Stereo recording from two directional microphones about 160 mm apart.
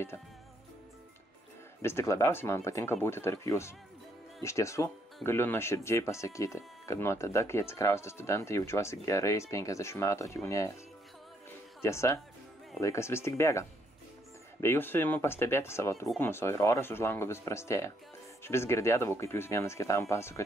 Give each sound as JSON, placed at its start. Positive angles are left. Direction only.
{"t": 1.8, "sound": "speech", "side_deg": 15}
{"t": 11.8, "sound": "speech", "side_deg": 15}